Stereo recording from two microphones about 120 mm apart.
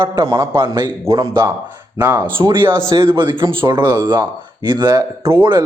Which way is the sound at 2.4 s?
40° right (ahead or behind).